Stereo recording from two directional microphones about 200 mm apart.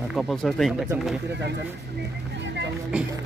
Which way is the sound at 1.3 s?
60° right (ahead or behind).